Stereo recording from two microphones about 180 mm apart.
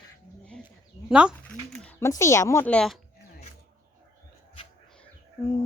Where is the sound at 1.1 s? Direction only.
5° right (ahead or behind).